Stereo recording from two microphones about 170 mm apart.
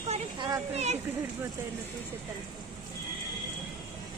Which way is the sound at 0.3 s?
25° right (ahead or behind).